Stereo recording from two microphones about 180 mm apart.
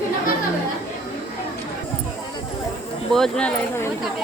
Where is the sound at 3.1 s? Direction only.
Centre (ahead or behind).